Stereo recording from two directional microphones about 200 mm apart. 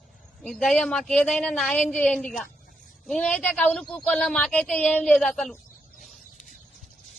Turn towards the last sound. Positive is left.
turn(degrees=0)  # may be behind; listen again after turning